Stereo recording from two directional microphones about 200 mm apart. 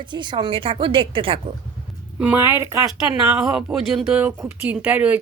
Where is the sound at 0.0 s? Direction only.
20° right (ahead or behind).